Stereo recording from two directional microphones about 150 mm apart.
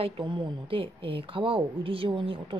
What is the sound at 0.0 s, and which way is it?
A woman's voice, 30° right (ahead or behind).